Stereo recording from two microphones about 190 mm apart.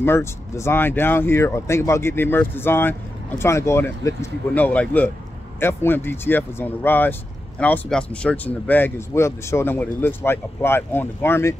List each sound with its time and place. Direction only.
0.0 s speech: 15° left (ahead or behind)